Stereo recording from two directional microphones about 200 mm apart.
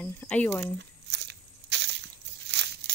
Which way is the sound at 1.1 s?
55° right (ahead or behind).